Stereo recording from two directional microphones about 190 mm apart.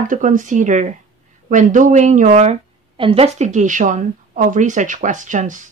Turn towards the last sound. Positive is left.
turn(degrees=-40)  # may be behind; listen again after turning